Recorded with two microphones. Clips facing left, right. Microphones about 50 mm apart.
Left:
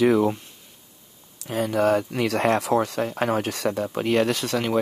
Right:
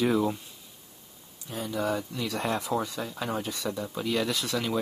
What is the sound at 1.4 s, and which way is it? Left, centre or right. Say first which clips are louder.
Speech: left 9 dB; left.